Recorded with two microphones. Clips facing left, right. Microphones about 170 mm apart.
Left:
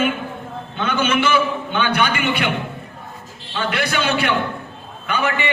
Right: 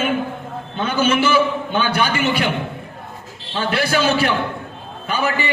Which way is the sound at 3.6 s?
35° right (ahead or behind).